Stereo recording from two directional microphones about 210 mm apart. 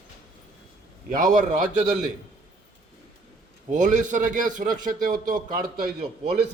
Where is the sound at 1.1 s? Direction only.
40° right (ahead or behind).